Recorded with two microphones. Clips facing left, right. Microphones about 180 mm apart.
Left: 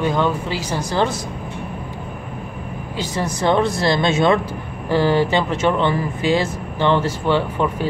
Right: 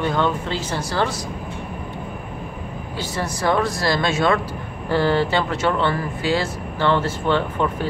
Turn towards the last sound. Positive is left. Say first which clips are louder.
# left 2 dB
turn(degrees=10)  # may be behind; listen again after turning